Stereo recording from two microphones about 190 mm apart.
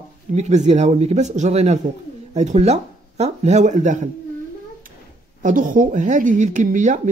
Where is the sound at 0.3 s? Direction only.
35° right (ahead or behind).